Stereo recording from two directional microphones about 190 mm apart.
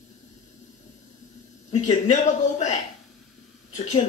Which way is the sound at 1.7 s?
35° left (ahead or behind).